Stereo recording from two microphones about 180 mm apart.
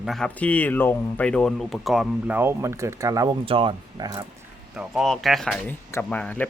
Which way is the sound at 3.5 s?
30° right (ahead or behind).